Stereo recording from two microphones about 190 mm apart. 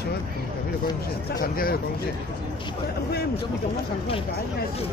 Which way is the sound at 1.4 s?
50° left (ahead or behind).